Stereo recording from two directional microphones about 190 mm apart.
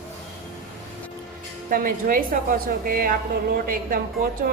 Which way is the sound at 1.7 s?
50° right (ahead or behind).